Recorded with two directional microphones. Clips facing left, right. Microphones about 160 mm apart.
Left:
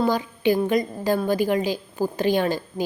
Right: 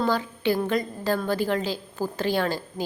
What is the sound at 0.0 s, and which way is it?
A woman's voice, 15° left (ahead or behind).